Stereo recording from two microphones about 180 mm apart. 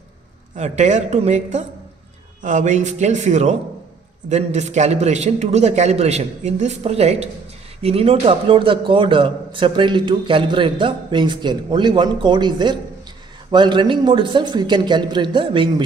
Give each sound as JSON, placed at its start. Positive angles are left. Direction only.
{"t": 0.6, "sound": "a man's voice", "side_deg": -40}